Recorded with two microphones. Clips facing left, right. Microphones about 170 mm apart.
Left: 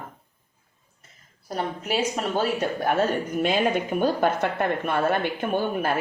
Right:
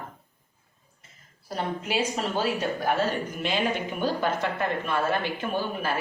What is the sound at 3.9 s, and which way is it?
A woman's voice, 50° left (ahead or behind).